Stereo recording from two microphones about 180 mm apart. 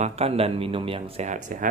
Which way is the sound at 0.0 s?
35° right (ahead or behind).